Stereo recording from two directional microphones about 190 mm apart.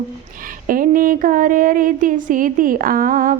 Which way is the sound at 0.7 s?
45° right (ahead or behind).